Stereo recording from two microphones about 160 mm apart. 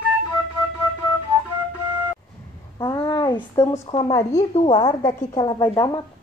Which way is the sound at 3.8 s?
35° left (ahead or behind).